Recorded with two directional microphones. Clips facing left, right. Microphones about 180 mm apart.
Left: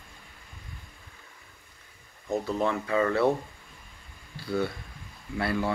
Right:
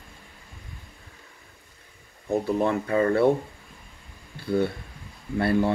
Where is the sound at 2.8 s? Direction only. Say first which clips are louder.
Right 4 dB; 35° right (ahead or behind).